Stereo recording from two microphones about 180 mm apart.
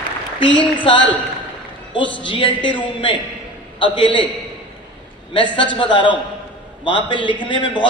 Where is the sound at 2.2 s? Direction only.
30° left (ahead or behind).